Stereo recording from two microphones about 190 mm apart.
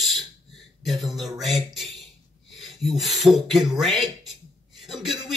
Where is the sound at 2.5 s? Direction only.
Centre (ahead or behind).